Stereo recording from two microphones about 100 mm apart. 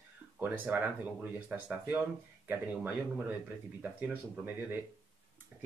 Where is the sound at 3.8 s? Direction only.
15° right (ahead or behind).